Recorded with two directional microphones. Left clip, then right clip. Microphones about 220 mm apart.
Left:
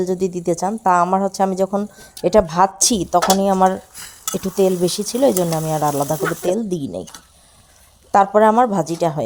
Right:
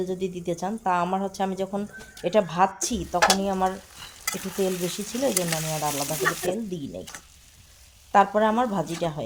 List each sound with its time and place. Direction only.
0.0 s a woman's voice: 35° left (ahead or behind)
8.1 s a woman's voice: 35° left (ahead or behind)